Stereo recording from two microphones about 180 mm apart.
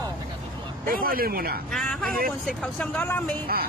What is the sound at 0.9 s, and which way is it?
Speech, 55° right (ahead or behind).